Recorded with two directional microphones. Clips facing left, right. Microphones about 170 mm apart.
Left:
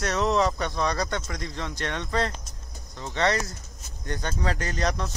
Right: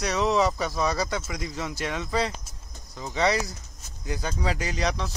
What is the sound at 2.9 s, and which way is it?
Speech, 5° right (ahead or behind).